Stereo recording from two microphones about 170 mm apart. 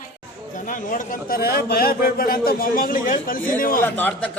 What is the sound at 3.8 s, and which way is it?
Speech, 10° left (ahead or behind).